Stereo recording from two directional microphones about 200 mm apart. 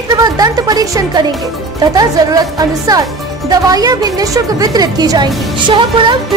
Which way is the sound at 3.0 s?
Centre (ahead or behind).